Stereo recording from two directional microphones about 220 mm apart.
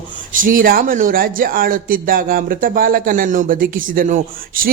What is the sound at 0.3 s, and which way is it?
Speech, 40° right (ahead or behind).